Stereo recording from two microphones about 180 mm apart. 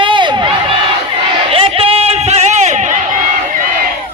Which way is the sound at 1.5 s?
30° right (ahead or behind).